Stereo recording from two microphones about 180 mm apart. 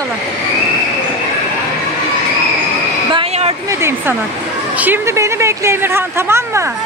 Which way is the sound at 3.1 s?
35° right (ahead or behind).